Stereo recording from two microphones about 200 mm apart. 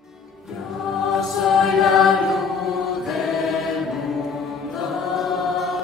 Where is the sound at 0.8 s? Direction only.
Centre (ahead or behind).